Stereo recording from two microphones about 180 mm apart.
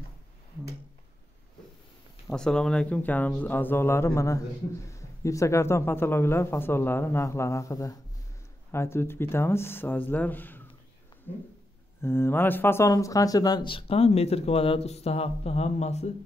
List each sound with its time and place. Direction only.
2.2 s speech: 5° left (ahead or behind)
12.0 s speech: 15° left (ahead or behind); by 16.1 s 40° left (ahead or behind)